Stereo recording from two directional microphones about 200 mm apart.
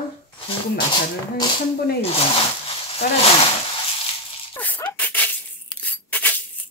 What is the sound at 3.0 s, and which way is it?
Speech, 50° left (ahead or behind).